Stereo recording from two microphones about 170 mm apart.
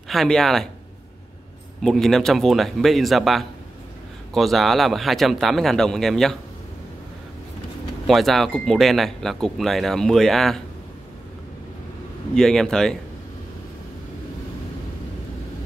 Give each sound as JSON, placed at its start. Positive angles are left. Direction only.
{"t": 0.1, "sound": "speech", "side_deg": 0}
{"t": 1.8, "sound": "speech", "side_deg": 0}
{"t": 8.1, "sound": "speech", "side_deg": 0}
{"t": 12.4, "sound": "speech", "side_deg": 0}